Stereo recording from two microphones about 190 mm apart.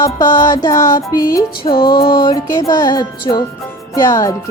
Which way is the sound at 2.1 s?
25° left (ahead or behind).